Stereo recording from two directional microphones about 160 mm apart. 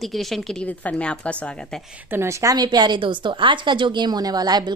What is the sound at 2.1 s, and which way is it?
A woman's voice, 15° right (ahead or behind).